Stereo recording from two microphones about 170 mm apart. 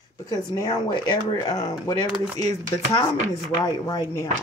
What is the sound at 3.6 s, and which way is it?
Speech, 20° left (ahead or behind).